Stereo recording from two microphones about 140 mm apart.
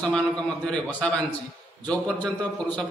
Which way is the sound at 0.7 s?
5° left (ahead or behind).